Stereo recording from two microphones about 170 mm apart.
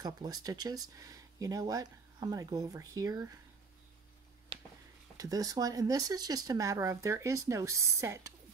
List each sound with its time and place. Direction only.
0.0 s speech: 25° right (ahead or behind)
5.1 s speech: 20° right (ahead or behind)